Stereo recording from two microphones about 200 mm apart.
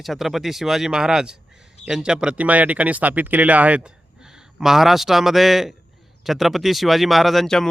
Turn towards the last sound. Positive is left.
turn(degrees=0)  # may be behind; listen again after turning